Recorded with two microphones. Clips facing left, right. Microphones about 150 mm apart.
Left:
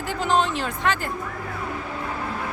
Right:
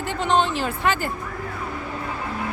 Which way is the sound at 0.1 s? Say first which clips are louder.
Right 1 dB; centre (ahead or behind).